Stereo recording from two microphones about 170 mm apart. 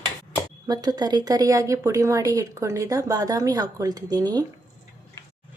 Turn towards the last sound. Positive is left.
turn(degrees=-25)  # may be behind; listen again after turning